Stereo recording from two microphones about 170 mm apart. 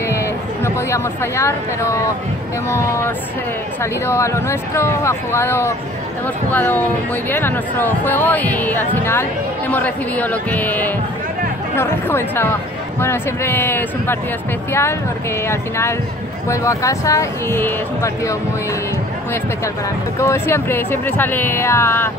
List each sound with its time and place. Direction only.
0.0 s a sound: 15° left (ahead or behind)
0.7 s speech: 15° left (ahead or behind)
20.2 s speech: 15° left (ahead or behind)